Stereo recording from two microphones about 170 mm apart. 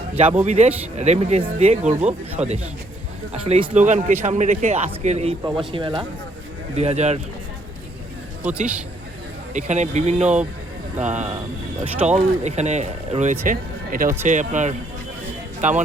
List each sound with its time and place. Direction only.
0.4 s a man's voice: 40° right (ahead or behind)
5.5 s speech: 30° right (ahead or behind)
6.7 s speech: 40° right (ahead or behind)
8.4 s a man's voice: 5° right (ahead or behind)
9.5 s a man's voice: 45° right (ahead or behind)
13.4 s a man's voice: 55° right (ahead or behind)